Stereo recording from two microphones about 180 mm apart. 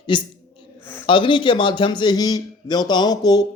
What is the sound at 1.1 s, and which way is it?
A man's voice, 25° left (ahead or behind).